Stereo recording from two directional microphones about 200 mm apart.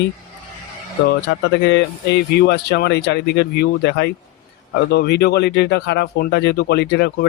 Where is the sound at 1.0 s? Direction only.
60° left (ahead or behind).